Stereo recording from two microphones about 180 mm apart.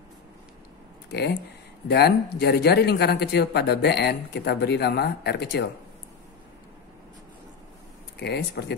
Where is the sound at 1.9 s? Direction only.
65° left (ahead or behind).